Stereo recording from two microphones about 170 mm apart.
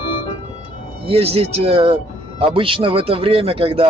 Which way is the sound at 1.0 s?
35° right (ahead or behind).